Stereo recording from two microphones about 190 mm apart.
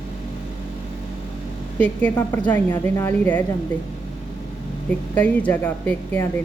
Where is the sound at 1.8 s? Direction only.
10° left (ahead or behind).